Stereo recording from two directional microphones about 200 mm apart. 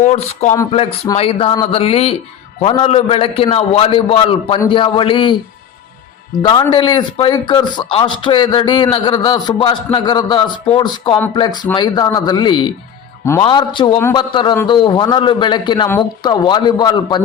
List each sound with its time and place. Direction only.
0.0 s speech: 35° left (ahead or behind)
6.4 s speech: 20° left (ahead or behind)